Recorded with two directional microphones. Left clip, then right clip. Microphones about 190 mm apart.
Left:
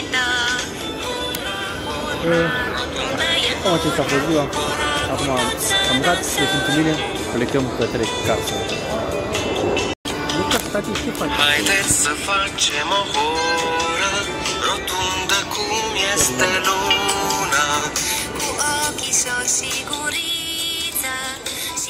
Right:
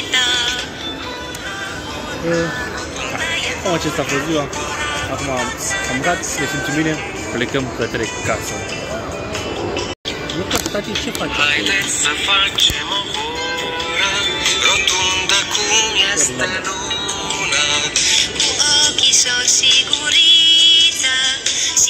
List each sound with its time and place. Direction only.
0.1 s music: 20° left (ahead or behind)
3.3 s speech: 70° left (ahead or behind)
5.4 s speech: 70° left (ahead or behind)
11.3 s speech: 55° left (ahead or behind)
12.0 s music: 35° left (ahead or behind)
12.5 s music: 50° left (ahead or behind); by 15.6 s 15° left (ahead or behind)
15.6 s music: 5° left (ahead or behind)
16.0 s music: 20° left (ahead or behind)
16.3 s music: 55° left (ahead or behind)
17.4 s music: 20° left (ahead or behind)